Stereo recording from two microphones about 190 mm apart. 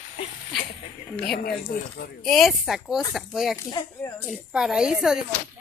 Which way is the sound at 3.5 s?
15° left (ahead or behind).